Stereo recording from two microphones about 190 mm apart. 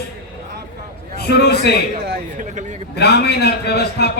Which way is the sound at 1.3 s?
60° left (ahead or behind).